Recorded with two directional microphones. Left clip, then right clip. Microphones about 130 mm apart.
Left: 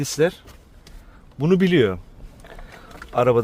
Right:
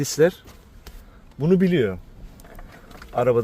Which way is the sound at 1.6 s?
50° left (ahead or behind).